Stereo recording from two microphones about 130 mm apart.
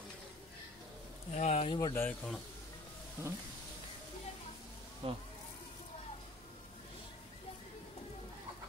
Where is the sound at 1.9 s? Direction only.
10° left (ahead or behind).